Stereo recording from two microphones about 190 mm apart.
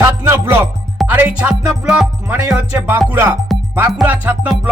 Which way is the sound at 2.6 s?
10° right (ahead or behind).